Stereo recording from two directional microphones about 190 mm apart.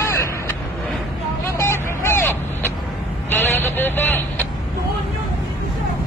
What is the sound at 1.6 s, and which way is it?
Vehicle, 15° left (ahead or behind).